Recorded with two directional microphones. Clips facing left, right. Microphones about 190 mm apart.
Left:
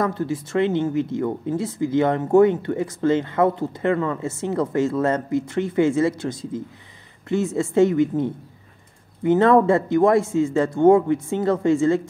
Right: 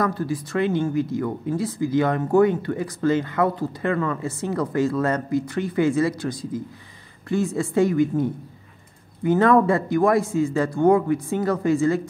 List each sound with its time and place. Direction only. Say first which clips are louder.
0.0 s speech: left 1 dB; 25° left (ahead or behind)